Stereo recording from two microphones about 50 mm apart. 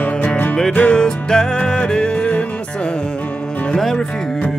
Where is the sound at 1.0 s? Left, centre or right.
Centre.